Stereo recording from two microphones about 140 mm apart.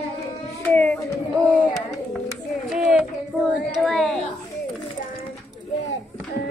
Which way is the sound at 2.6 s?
5° right (ahead or behind).